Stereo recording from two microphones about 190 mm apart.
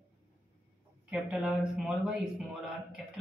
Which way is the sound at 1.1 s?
5° right (ahead or behind).